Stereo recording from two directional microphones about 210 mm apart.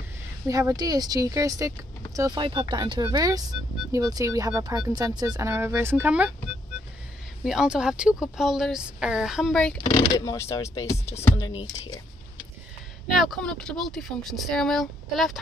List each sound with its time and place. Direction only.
0.5 s speech: 15° right (ahead or behind)
7.4 s speech: 5° right (ahead or behind)
9.8 s speech: 20° left (ahead or behind)
13.1 s speech: centre (ahead or behind)